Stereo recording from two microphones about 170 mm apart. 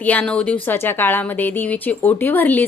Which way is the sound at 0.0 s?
5° left (ahead or behind).